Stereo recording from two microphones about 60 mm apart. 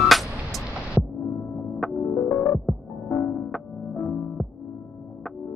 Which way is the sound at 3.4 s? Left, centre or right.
Centre.